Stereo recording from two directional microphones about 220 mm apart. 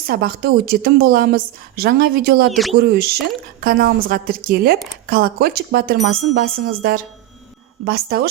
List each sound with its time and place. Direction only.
0.1 s a woman's voice: 45° right (ahead or behind)
2.5 s speech: centre (ahead or behind)
2.7 s a woman's voice: 45° right (ahead or behind)